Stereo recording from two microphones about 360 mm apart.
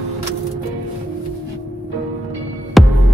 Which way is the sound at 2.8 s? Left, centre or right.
Centre.